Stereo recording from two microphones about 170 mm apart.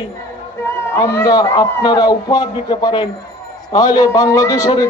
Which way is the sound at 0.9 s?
15° left (ahead or behind).